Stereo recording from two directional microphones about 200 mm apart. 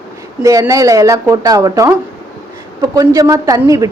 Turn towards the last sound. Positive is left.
turn(degrees=-15)  # may be behind; listen again after turning